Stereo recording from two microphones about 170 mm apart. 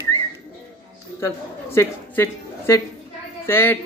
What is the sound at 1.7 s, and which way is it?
A man's voice, 15° left (ahead or behind).